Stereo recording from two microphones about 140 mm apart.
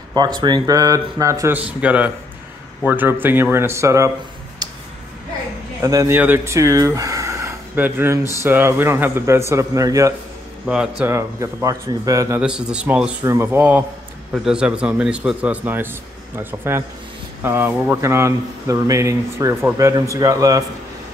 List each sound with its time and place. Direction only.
0.1 s speech: 30° right (ahead or behind)
1.6 s a man's voice: 10° right (ahead or behind)
4.6 s a sound: 30° right (ahead or behind)
5.8 s a man's voice: 25° right (ahead or behind)
6.1 s speech: 15° right (ahead or behind)
10.7 s speech: 5° right (ahead or behind)
11.1 s speech: 20° right (ahead or behind)
12.4 s a man's voice: 5° right (ahead or behind)
13.2 s a man's voice: 20° right (ahead or behind)